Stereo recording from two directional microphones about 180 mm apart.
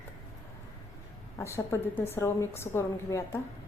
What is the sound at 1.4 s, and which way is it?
A woman's voice, 15° left (ahead or behind).